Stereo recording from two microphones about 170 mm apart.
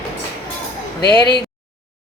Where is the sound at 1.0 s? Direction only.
25° left (ahead or behind).